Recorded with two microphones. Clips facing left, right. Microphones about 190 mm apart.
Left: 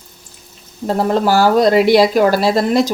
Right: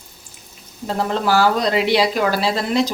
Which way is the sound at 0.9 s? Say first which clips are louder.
Left 5 dB; 45° left (ahead or behind).